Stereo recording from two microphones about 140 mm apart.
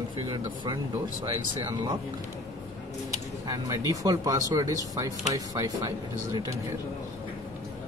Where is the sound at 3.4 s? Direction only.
25° right (ahead or behind).